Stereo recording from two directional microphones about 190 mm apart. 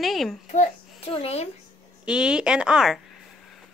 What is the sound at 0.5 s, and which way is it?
A child's voice, 35° left (ahead or behind).